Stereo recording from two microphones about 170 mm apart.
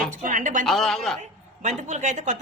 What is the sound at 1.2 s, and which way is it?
A woman's voice, 45° right (ahead or behind).